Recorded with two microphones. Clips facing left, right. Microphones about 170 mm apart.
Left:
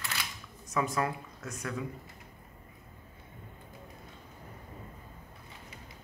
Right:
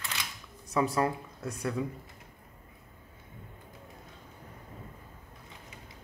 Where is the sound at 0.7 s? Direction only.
30° right (ahead or behind).